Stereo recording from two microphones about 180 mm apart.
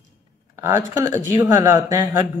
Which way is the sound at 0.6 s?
20° right (ahead or behind).